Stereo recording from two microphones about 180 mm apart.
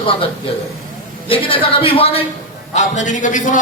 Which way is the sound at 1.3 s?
30° left (ahead or behind).